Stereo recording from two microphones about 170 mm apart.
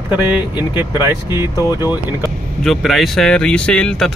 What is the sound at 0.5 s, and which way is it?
Speech, 10° right (ahead or behind).